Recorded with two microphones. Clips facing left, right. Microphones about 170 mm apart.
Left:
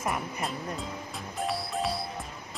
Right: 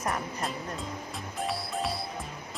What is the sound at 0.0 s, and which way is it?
Music, centre (ahead or behind).